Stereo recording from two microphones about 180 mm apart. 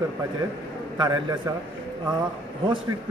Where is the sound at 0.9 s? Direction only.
25° right (ahead or behind).